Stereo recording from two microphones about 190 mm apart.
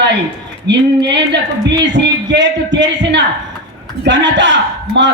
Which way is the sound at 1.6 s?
65° right (ahead or behind).